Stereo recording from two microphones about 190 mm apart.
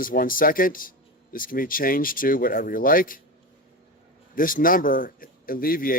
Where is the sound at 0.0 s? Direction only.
45° left (ahead or behind).